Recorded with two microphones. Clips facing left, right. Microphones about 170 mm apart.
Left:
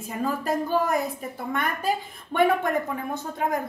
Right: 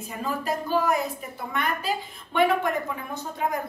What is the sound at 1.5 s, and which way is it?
Speech, 50° left (ahead or behind).